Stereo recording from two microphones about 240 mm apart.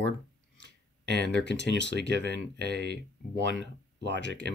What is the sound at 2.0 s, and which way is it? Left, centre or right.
Speech, right.